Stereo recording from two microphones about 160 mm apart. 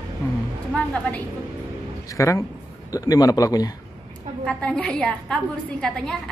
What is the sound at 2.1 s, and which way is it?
A man's voice, 20° left (ahead or behind).